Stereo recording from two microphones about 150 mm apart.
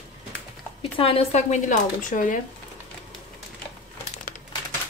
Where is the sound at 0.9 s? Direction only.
40° left (ahead or behind); by 2.4 s 60° left (ahead or behind).